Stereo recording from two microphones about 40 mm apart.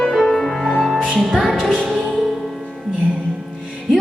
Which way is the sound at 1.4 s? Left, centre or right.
Centre.